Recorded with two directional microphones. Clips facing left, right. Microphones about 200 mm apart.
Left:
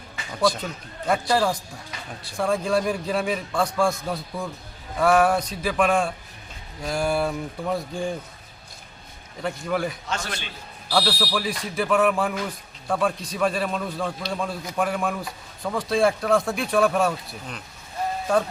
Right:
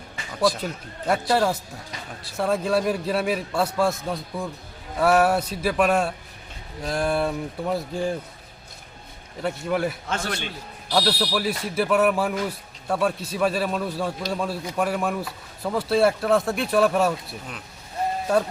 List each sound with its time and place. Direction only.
0.4 s a man's voice: 5° right (ahead or behind)
9.4 s a man's voice: 5° right (ahead or behind)
10.1 s a man's voice: 55° right (ahead or behind)
10.9 s a man's voice: 5° right (ahead or behind)